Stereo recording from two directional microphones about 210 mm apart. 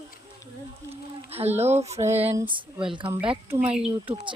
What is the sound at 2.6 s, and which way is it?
Speech, 25° right (ahead or behind).